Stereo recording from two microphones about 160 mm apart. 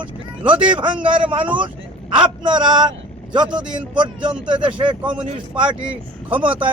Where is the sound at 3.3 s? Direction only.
30° right (ahead or behind).